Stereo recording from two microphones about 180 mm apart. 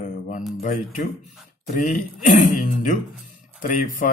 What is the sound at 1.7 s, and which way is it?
A man's voice, 45° left (ahead or behind).